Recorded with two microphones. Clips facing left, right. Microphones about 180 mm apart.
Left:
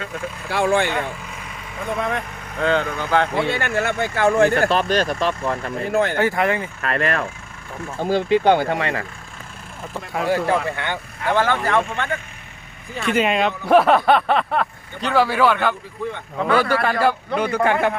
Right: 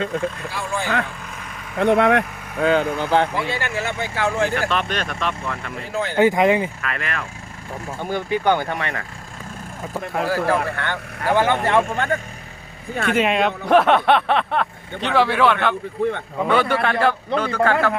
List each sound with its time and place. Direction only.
0.5 s speech: 65° left (ahead or behind)
1.8 s speech: 70° right (ahead or behind)
2.6 s speech: 10° right (ahead or behind)
3.3 s speech: 55° left (ahead or behind)
4.7 s speech: 35° left (ahead or behind)
5.8 s speech: 55° left (ahead or behind)
6.1 s speech: 15° right (ahead or behind)
6.8 s speech: 40° left (ahead or behind)
7.9 s speech: 30° left (ahead or behind)
10.2 s speech: 20° left (ahead or behind)
11.3 s speech: 15° right (ahead or behind)
11.9 s speech: 40° right (ahead or behind)
13.1 s a man's voice: centre (ahead or behind); by 17.9 s 20° left (ahead or behind)